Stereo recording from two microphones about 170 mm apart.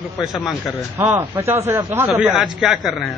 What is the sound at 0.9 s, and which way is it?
A man's voice, 15° right (ahead or behind).